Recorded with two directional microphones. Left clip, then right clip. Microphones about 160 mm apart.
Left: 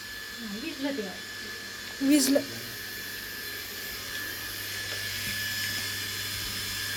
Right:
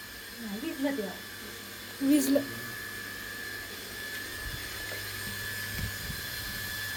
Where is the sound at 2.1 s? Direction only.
20° left (ahead or behind).